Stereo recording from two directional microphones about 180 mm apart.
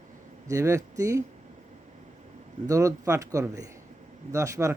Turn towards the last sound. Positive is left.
turn(degrees=-15)  # may be behind; listen again after turning